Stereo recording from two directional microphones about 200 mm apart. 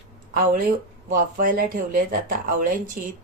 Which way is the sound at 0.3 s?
45° right (ahead or behind).